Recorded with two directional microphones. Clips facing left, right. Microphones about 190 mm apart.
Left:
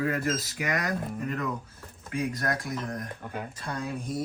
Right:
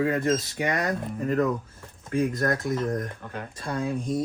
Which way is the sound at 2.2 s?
50° right (ahead or behind).